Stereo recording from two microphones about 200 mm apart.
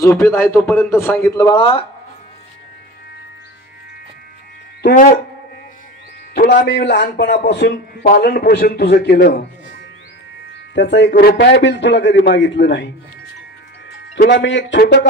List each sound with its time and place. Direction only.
0.0 s a man's voice: 15° left (ahead or behind)
4.8 s speech: 40° left (ahead or behind)
6.3 s a man's voice: 50° left (ahead or behind)
10.7 s a man's voice: 60° left (ahead or behind)
14.3 s a man's voice: 65° left (ahead or behind)